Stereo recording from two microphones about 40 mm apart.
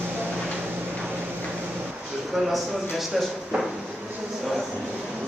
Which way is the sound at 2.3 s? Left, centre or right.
Centre.